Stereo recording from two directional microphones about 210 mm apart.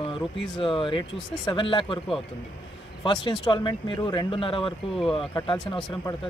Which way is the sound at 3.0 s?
20° left (ahead or behind).